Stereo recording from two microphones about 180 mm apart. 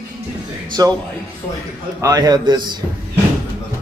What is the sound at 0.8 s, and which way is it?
Speech, 20° right (ahead or behind).